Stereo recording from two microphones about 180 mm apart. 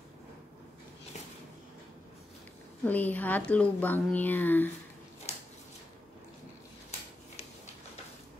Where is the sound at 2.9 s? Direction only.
10° left (ahead or behind).